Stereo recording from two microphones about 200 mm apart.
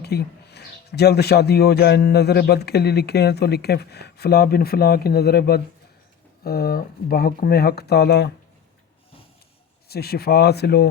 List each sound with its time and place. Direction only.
0.0 s speech: 55° left (ahead or behind)
9.9 s speech: 50° left (ahead or behind)